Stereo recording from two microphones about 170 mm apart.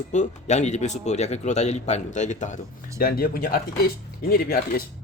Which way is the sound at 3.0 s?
60° left (ahead or behind).